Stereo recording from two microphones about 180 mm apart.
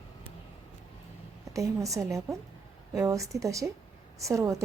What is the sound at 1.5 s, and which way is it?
A woman's voice, 20° right (ahead or behind).